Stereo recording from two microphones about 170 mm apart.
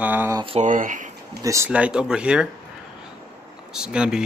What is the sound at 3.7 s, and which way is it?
Speech, 5° right (ahead or behind).